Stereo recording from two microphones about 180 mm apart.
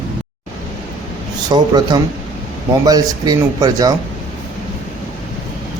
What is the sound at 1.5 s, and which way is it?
A man's voice, 25° right (ahead or behind).